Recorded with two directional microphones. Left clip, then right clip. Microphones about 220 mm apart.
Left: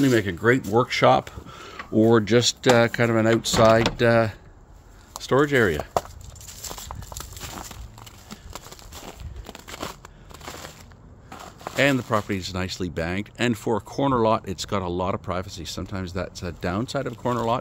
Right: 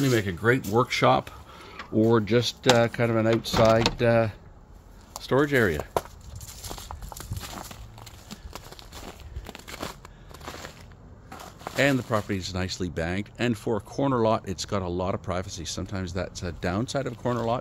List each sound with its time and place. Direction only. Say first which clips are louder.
0.0 s speech: left 4 dB; 10° left (ahead or behind)
7.4 s walk: even; 10° left (ahead or behind)
10.4 s a sound: left 1 dB; centre (ahead or behind)
11.2 s speech: left 2 dB; 15° left (ahead or behind)